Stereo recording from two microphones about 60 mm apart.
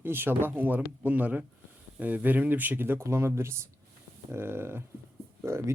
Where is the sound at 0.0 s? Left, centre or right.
Right.